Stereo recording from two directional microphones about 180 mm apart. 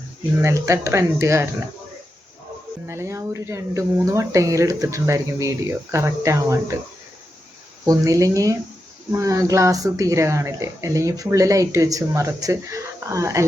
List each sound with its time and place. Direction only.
0.4 s speech: 15° right (ahead or behind)
2.8 s speech: 15° right (ahead or behind)
7.9 s speech: 20° right (ahead or behind)